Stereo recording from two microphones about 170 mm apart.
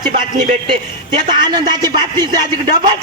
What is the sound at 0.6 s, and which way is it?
A man's voice, 25° right (ahead or behind).